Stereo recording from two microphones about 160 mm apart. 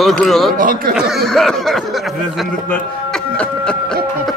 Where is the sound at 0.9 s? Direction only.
Centre (ahead or behind).